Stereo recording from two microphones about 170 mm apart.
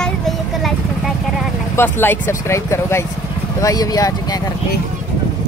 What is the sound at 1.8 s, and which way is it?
Speech, 15° left (ahead or behind).